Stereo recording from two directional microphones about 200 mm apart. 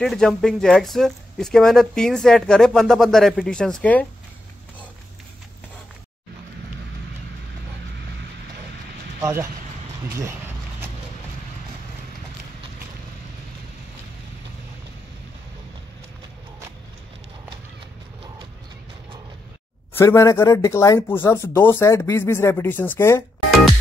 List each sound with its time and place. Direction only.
0.0 s speech: centre (ahead or behind)
9.2 s speech: 15° right (ahead or behind)
19.9 s speech: 10° left (ahead or behind)